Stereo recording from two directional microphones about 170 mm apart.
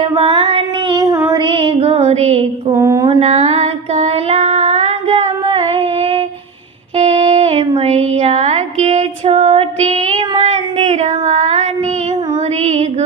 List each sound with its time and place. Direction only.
0.0 s female singing: 30° right (ahead or behind)
0.9 s child singing: 15° right (ahead or behind)
1.4 s music: 30° right (ahead or behind)
2.7 s a sound: 20° right (ahead or behind)
3.2 s female singing: 40° right (ahead or behind)
6.9 s a sound: 40° right (ahead or behind)